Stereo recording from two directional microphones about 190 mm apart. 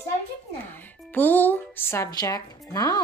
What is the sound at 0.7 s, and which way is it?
A woman's voice, 10° left (ahead or behind).